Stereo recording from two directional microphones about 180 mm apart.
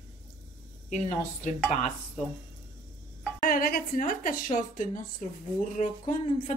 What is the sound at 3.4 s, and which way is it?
A woman's voice, 50° left (ahead or behind).